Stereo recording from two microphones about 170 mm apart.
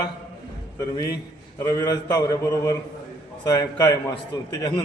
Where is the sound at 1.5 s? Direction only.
20° left (ahead or behind).